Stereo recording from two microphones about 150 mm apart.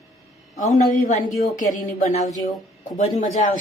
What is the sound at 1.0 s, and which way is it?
Speech, 60° left (ahead or behind).